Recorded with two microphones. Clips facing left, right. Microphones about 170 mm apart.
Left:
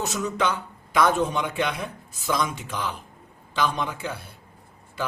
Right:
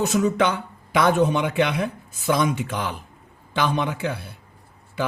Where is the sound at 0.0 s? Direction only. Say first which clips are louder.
Right 6 dB; 55° right (ahead or behind).